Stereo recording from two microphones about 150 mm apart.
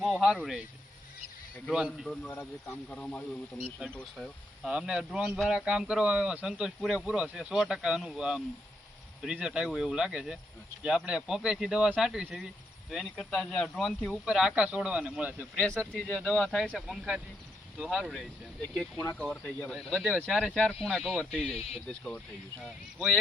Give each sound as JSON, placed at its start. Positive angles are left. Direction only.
{"t": 0.0, "sound": "speech", "side_deg": -5}
{"t": 1.7, "sound": "a man's voice", "side_deg": -5}
{"t": 2.3, "sound": "a man's voice", "side_deg": 15}
{"t": 4.6, "sound": "a man's voice", "side_deg": -5}
{"t": 15.9, "sound": "a man's voice", "side_deg": 5}
{"t": 21.4, "sound": "speech", "side_deg": 45}
{"t": 21.8, "sound": "speech", "side_deg": 5}